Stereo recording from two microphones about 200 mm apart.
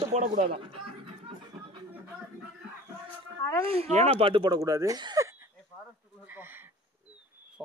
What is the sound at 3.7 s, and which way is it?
Speech, 30° right (ahead or behind).